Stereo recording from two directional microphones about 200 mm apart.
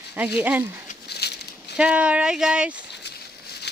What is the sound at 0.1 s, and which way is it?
Speech, 10° right (ahead or behind).